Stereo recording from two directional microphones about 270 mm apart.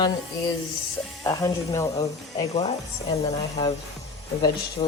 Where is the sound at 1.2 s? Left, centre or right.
Centre.